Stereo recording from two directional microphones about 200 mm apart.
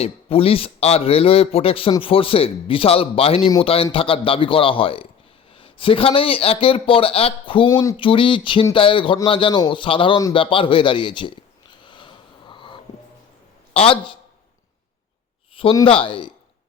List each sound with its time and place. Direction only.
0.0 s a man's voice: 30° left (ahead or behind)
11.7 s wheeze: 25° left (ahead or behind)
13.7 s a man's voice: 25° left (ahead or behind)
15.5 s a man's voice: 25° left (ahead or behind)